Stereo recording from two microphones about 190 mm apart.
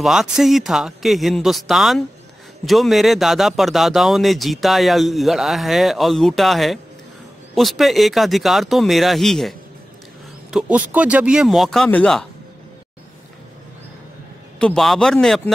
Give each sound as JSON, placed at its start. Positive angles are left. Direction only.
{"t": 0.0, "sound": "speech", "side_deg": 0}
{"t": 14.6, "sound": "speech", "side_deg": 5}